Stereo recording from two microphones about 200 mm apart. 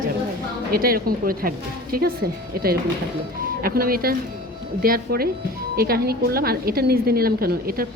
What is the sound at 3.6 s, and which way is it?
A woman's voice, 45° right (ahead or behind).